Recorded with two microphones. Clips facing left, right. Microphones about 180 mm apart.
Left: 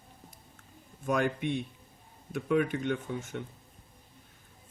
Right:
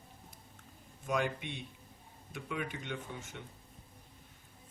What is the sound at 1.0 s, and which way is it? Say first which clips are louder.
Speech: left 6 dB; 50° left (ahead or behind).